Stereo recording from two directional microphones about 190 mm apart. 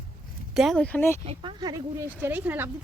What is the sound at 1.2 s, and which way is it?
Speech, 25° right (ahead or behind).